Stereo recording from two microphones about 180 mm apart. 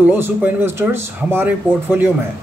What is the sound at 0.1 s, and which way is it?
Speech, 10° right (ahead or behind).